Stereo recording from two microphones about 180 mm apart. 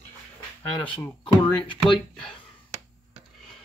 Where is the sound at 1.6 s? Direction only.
25° left (ahead or behind).